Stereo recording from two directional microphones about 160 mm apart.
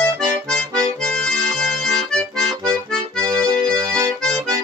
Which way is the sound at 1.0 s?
5° left (ahead or behind).